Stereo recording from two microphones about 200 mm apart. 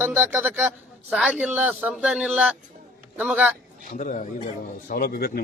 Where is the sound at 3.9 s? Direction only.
40° left (ahead or behind).